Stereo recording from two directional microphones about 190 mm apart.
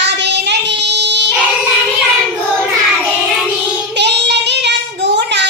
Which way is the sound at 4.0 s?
65° right (ahead or behind).